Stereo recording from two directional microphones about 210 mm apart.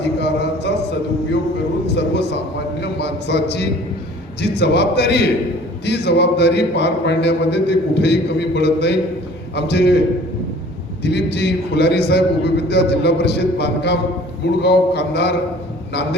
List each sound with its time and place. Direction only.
0.0 s a sound: 55° left (ahead or behind)
2.0 s a man's voice: 55° left (ahead or behind)
11.0 s a man's voice: 55° left (ahead or behind)